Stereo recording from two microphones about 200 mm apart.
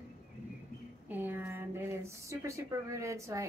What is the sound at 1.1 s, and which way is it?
Speech, 10° right (ahead or behind).